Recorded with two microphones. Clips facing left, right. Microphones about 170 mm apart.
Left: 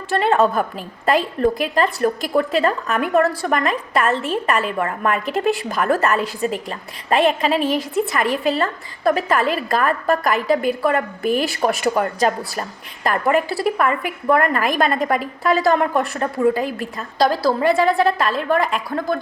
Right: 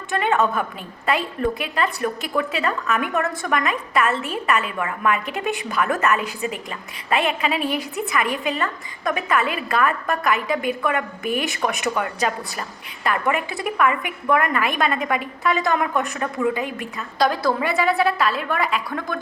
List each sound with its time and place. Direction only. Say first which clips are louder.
0.1 s a woman's voice: left 4 dB; 35° left (ahead or behind)
17.6 s a woman's voice: left 6 dB; 10° right (ahead or behind)